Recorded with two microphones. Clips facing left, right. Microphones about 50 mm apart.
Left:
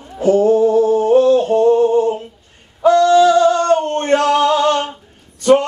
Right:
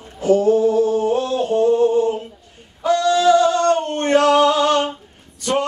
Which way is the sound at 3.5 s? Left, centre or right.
Left.